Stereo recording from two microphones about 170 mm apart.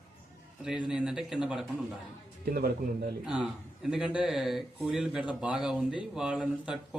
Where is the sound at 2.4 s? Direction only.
65° right (ahead or behind).